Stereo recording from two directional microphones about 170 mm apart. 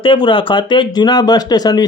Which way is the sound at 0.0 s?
30° left (ahead or behind).